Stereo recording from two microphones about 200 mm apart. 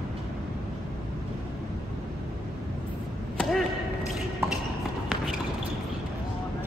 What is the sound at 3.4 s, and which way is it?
Arrow, centre (ahead or behind).